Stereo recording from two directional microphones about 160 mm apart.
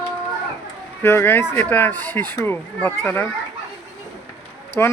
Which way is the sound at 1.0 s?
15° left (ahead or behind).